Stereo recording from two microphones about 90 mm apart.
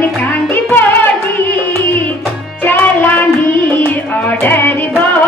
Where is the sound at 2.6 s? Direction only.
20° left (ahead or behind).